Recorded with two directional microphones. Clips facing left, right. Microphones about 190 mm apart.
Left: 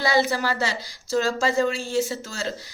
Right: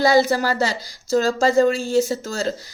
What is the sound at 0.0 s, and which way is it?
A woman's voice, 40° right (ahead or behind).